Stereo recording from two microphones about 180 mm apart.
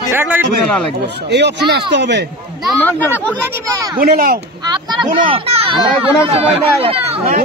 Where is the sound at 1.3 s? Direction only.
70° right (ahead or behind).